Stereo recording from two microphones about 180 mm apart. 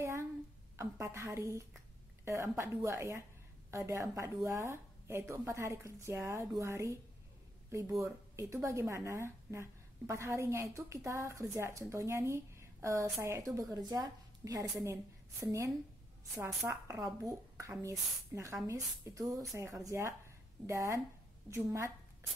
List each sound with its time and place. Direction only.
0.7 s a woman's voice: 15° right (ahead or behind)
8.0 s a woman's voice: 15° right (ahead or behind)